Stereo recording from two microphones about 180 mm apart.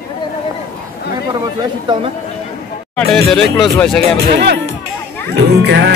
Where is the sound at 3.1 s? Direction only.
Centre (ahead or behind).